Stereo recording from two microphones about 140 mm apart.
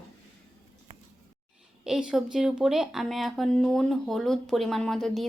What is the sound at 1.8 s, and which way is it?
A woman's voice, 5° right (ahead or behind).